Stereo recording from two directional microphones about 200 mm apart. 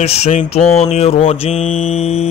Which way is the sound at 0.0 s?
30° left (ahead or behind).